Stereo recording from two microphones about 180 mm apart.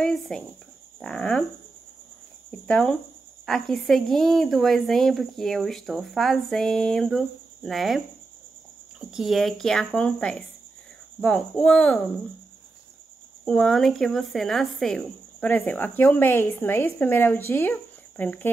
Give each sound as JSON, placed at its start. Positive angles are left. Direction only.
{"t": 0.0, "sound": "a sound", "side_deg": 5}
{"t": 0.9, "sound": "speech", "side_deg": 5}
{"t": 2.6, "sound": "speech", "side_deg": 5}
{"t": 9.1, "sound": "speech", "side_deg": 0}
{"t": 13.5, "sound": "speech", "side_deg": 5}